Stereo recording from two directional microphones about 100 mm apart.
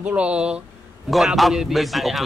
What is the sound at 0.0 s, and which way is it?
A woman's voice, 10° right (ahead or behind).